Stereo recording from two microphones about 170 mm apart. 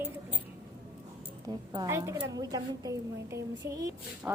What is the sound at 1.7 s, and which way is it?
A woman's voice, 20° right (ahead or behind).